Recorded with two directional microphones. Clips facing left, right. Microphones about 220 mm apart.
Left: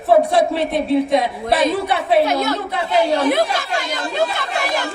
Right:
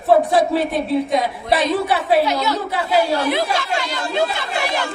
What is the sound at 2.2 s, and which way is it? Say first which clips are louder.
Speech: left 1 dB; 50° left (ahead or behind).